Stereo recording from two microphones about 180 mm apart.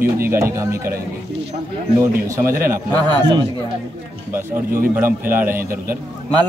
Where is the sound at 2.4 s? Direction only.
15° right (ahead or behind).